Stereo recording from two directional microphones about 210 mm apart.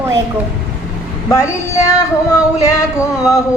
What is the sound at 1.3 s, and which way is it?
Female singing, 15° left (ahead or behind).